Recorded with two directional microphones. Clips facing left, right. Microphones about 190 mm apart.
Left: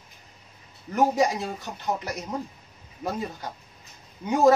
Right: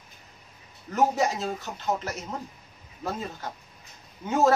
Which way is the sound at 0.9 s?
15° left (ahead or behind).